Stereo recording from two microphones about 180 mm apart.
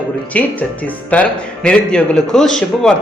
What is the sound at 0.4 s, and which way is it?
A man's voice, 10° left (ahead or behind).